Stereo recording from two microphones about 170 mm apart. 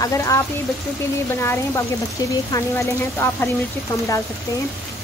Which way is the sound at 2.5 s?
15° left (ahead or behind).